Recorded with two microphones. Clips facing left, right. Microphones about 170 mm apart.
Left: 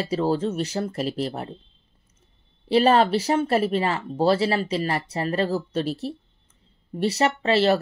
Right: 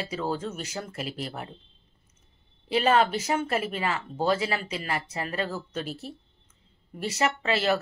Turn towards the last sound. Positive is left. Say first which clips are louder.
# left 6 dB
turn(degrees=35)  # may be behind; listen again after turning